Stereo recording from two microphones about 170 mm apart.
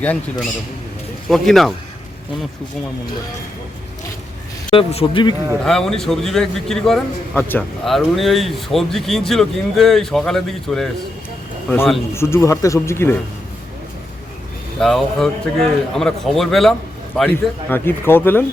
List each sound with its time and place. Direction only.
0.0 s speech: 10° left (ahead or behind)
4.7 s speech: 35° left (ahead or behind)
5.6 s speech: 5° left (ahead or behind)
7.9 s speech: centre (ahead or behind)
14.8 s speech: centre (ahead or behind)